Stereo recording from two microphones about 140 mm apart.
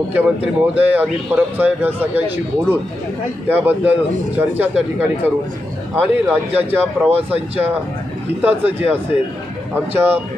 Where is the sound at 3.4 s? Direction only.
15° right (ahead or behind).